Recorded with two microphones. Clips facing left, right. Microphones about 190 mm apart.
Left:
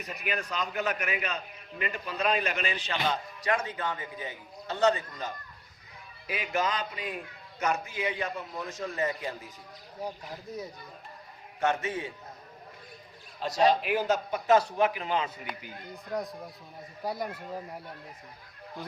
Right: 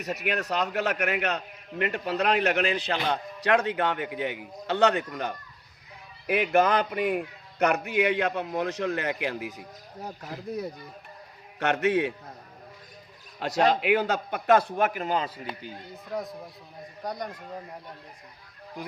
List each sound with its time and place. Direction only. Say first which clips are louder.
0.0 s a man's voice: right 5 dB; 75° right (ahead or behind)
11.6 s a man's voice: right 5 dB; 70° right (ahead or behind)
13.4 s a man's voice: right 1 dB; 65° right (ahead or behind); by 15.3 s 40° right (ahead or behind)
16.0 s speech: even; centre (ahead or behind)